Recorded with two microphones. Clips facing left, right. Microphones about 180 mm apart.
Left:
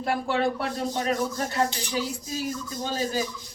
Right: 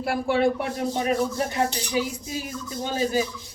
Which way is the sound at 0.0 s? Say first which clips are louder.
Right 3 dB; 10° right (ahead or behind).